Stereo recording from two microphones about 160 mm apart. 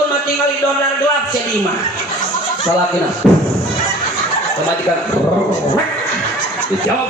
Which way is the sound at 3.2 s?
Centre (ahead or behind).